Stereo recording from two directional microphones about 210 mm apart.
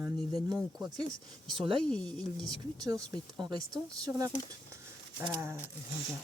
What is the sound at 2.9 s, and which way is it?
Speech, 20° right (ahead or behind).